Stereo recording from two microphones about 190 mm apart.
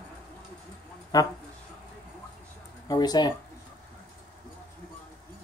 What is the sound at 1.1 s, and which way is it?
Speech, 20° left (ahead or behind).